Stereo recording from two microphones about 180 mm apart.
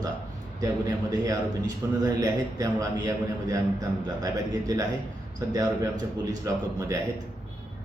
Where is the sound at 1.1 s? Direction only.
20° right (ahead or behind).